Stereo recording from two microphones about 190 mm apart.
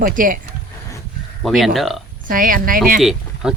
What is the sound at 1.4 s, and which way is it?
Speech, centre (ahead or behind).